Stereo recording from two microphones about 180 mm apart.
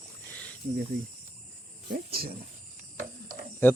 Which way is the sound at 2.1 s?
55° right (ahead or behind).